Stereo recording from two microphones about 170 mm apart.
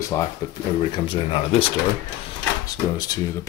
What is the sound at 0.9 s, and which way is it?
Speech, 30° left (ahead or behind).